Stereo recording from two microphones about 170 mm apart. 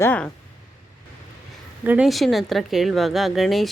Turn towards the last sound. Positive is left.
turn(degrees=0)  # may be behind; listen again after turning